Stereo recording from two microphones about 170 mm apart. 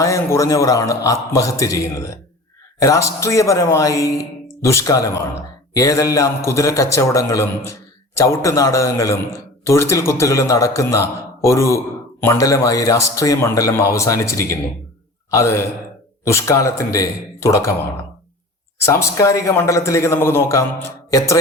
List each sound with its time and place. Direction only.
0.0 s a man's voice: 15° left (ahead or behind)
18.9 s a man's voice: 15° left (ahead or behind)